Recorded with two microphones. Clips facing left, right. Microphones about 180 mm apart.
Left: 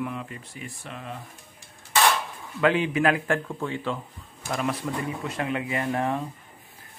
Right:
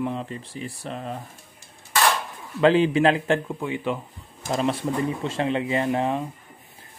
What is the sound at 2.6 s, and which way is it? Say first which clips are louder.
A man's voice: right 4 dB; 30° right (ahead or behind).